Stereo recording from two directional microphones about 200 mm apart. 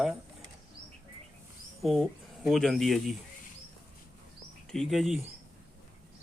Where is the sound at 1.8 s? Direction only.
Centre (ahead or behind).